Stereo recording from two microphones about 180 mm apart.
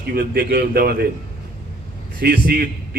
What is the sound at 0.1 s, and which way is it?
Speech, 60° right (ahead or behind).